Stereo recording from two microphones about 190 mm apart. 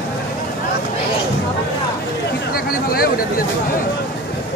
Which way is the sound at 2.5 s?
50° left (ahead or behind).